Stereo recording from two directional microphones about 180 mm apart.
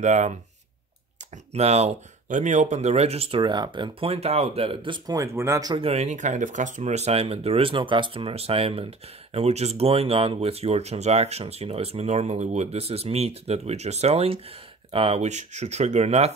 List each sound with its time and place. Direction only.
0.0 s speech: 40° right (ahead or behind)
1.5 s speech: 35° right (ahead or behind)